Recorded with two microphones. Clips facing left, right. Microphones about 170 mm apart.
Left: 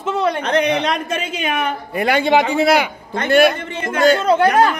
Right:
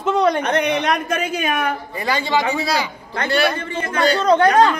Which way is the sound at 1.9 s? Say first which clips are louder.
Left 7 dB; 60° left (ahead or behind).